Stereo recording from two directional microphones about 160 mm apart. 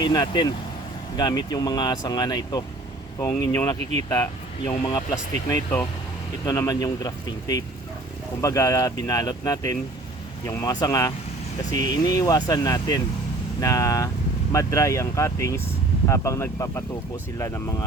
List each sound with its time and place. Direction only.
0.0 s speech: 25° left (ahead or behind)